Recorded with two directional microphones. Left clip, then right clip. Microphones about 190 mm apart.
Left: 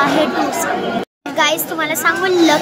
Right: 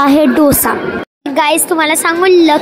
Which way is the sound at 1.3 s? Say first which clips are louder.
Right 5 dB; 30° right (ahead or behind).